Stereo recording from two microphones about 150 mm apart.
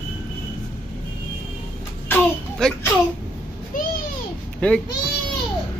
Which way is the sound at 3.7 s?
70° left (ahead or behind).